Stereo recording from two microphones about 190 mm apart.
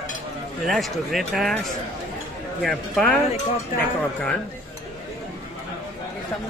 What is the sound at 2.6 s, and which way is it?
Speech, centre (ahead or behind).